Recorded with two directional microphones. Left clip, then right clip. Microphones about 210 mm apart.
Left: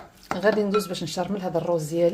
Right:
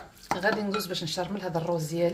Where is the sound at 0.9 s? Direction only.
60° left (ahead or behind).